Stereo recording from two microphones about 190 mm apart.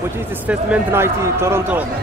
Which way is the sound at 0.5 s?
10° right (ahead or behind).